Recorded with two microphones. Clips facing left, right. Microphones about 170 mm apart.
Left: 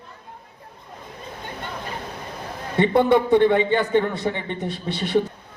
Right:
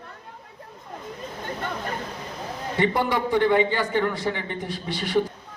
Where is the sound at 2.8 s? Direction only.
25° left (ahead or behind).